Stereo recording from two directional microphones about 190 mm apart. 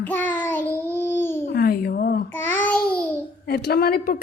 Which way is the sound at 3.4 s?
55° left (ahead or behind).